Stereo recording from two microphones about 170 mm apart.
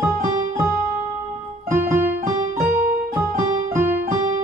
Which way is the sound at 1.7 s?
15° right (ahead or behind).